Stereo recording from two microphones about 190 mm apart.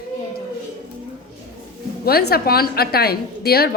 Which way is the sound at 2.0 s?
55° left (ahead or behind).